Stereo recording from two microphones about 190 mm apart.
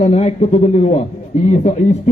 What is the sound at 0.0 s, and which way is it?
A man's voice, 35° left (ahead or behind).